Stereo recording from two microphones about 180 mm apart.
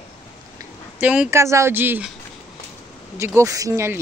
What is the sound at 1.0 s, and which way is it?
Speech, 5° right (ahead or behind).